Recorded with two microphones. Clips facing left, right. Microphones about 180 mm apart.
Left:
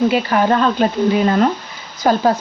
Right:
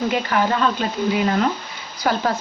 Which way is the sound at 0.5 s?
45° left (ahead or behind).